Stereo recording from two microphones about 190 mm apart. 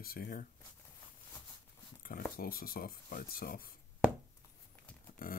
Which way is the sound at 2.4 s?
50° left (ahead or behind).